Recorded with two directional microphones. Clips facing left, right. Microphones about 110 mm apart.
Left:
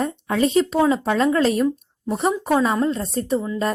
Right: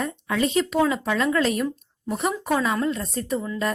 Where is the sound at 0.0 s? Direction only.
35° left (ahead or behind).